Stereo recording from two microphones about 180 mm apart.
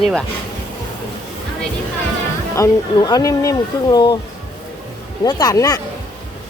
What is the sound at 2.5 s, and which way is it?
Speech, 20° left (ahead or behind).